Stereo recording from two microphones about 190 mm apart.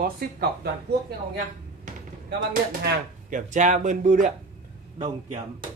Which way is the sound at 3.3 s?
40° right (ahead or behind).